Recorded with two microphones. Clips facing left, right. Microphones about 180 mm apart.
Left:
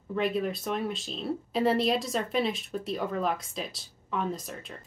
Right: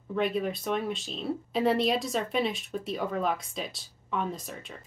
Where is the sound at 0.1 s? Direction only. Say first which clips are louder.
Even; centre (ahead or behind).